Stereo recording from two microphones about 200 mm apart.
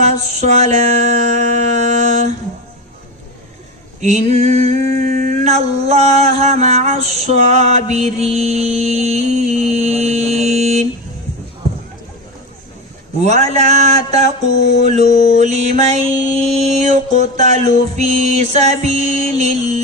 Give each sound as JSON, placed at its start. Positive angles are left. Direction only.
{"t": 0.0, "sound": "music", "side_deg": -35}
{"t": 4.0, "sound": "a sound", "side_deg": -35}
{"t": 13.2, "sound": "mantra", "side_deg": -35}